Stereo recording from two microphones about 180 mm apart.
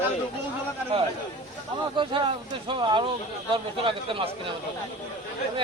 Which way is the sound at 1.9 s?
25° right (ahead or behind).